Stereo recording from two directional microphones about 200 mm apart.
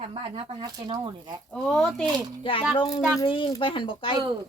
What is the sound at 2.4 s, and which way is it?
Speech, 25° left (ahead or behind).